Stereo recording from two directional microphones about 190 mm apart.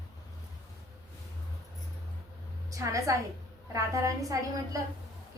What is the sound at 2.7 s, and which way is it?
A woman's voice, 15° right (ahead or behind).